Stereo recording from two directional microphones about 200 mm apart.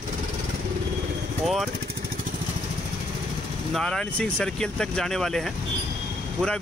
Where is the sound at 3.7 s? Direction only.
5° left (ahead or behind).